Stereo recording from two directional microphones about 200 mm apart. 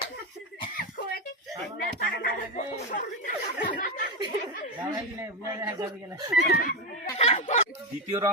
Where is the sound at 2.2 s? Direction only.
40° left (ahead or behind).